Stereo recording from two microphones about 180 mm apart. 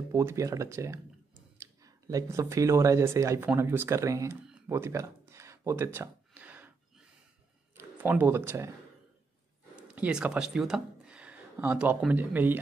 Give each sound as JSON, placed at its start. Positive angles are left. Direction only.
{"t": 0.1, "sound": "speech", "side_deg": -15}
{"t": 4.6, "sound": "a sound", "side_deg": -15}
{"t": 7.7, "sound": "speech", "side_deg": -10}
{"t": 9.8, "sound": "speech", "side_deg": -5}